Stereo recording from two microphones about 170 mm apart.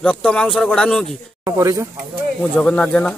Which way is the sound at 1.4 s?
20° right (ahead or behind).